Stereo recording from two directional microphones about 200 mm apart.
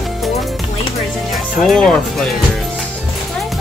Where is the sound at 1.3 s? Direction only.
Centre (ahead or behind).